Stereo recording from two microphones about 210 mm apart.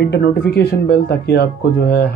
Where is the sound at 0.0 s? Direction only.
50° left (ahead or behind).